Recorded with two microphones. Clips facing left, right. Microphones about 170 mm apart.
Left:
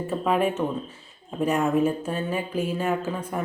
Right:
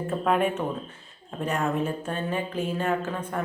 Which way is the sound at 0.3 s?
Centre (ahead or behind).